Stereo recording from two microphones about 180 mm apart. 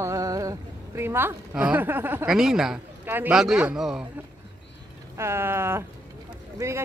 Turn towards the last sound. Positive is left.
turn(degrees=-15)  # may be behind; listen again after turning